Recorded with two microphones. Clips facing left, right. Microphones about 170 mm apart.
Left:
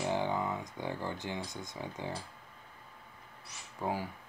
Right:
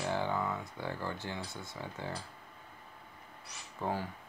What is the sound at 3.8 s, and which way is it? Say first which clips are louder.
Speech: even; 10° left (ahead or behind).